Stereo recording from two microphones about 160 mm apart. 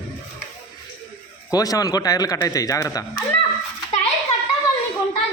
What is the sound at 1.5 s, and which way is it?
A man's voice, 20° left (ahead or behind).